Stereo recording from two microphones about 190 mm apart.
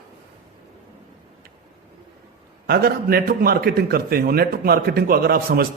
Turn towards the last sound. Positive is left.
turn(degrees=-50)  # may be behind; listen again after turning